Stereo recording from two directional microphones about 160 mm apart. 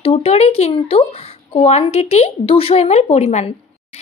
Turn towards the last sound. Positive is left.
turn(degrees=40)  # may be behind; listen again after turning